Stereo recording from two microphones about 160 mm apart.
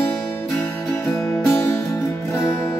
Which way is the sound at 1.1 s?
15° left (ahead or behind).